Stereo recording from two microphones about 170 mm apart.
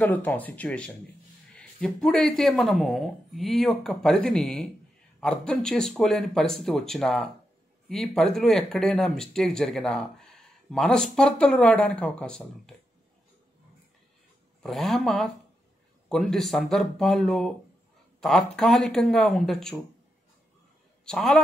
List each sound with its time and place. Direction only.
0.0 s speech: 10° left (ahead or behind)
14.6 s speech: centre (ahead or behind)
21.0 s a woman's voice: 5° left (ahead or behind)